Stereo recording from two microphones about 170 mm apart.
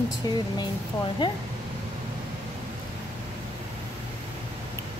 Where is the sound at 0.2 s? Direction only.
25° left (ahead or behind).